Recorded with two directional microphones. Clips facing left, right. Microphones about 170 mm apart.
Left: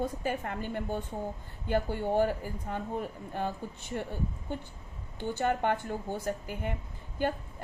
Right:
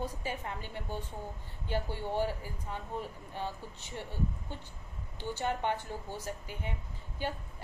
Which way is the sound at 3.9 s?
60° left (ahead or behind).